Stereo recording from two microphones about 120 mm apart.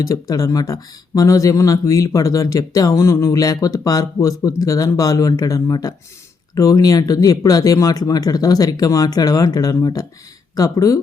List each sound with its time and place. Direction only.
0.0 s speech: 30° left (ahead or behind)